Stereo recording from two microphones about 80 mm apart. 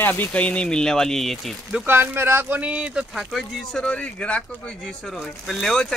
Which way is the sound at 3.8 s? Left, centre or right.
Centre.